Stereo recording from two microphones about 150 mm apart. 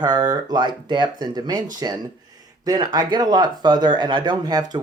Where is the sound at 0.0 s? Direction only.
25° right (ahead or behind).